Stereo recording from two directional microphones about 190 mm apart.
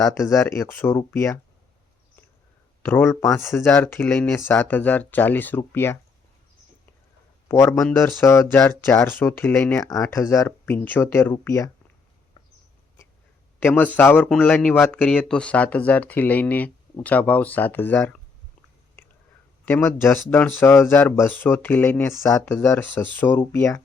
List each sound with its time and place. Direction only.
0.0 s speech: 15° left (ahead or behind)
2.8 s speech: 10° left (ahead or behind)
7.4 s speech: 15° left (ahead or behind)
13.6 s speech: 10° left (ahead or behind)
19.6 s speech: 10° left (ahead or behind)